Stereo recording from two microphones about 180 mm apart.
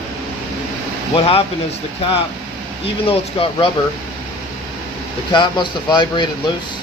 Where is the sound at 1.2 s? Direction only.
30° left (ahead or behind).